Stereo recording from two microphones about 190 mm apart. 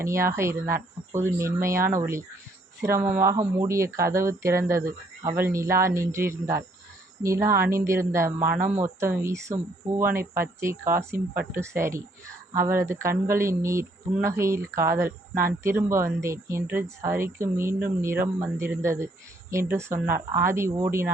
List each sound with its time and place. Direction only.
0.0 s speech: 15° right (ahead or behind)